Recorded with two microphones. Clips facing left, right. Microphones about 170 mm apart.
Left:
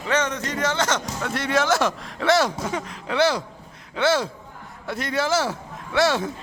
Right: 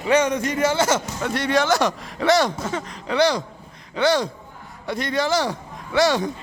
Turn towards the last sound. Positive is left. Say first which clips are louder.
# right 2 dB
turn(degrees=0)  # may be behind; listen again after turning